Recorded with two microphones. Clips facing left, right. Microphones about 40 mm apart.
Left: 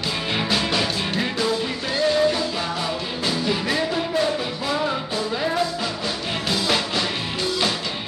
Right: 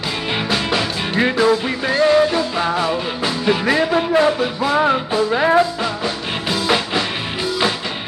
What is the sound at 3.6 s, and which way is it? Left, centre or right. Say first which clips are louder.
Music: right 7 dB; right.